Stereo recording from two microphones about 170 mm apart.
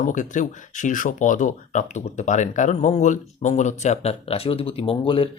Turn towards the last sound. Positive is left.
turn(degrees=35)  # may be behind; listen again after turning